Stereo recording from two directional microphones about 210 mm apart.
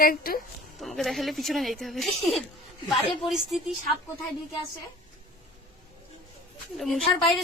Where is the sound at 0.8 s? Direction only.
Centre (ahead or behind).